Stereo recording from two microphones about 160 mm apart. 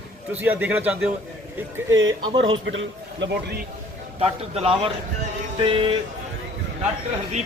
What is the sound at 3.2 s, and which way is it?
Speech, 90° right.